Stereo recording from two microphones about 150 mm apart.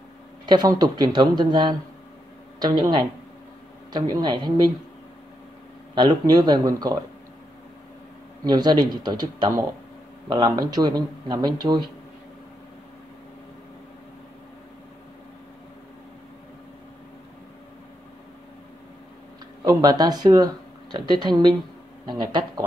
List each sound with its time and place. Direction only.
0.5 s speech: 25° right (ahead or behind)
3.9 s speech: 30° right (ahead or behind)
5.9 s speech: 25° right (ahead or behind)
8.5 s speech: 30° right (ahead or behind)
19.6 s speech: 25° right (ahead or behind)